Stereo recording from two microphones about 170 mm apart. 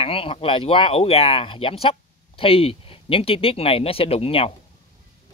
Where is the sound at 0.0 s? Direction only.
35° left (ahead or behind).